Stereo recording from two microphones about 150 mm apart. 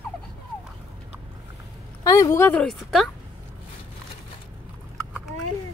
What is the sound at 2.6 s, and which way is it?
Speech, centre (ahead or behind).